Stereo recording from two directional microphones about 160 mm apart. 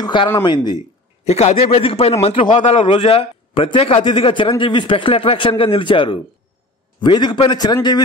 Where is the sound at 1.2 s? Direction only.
40° left (ahead or behind).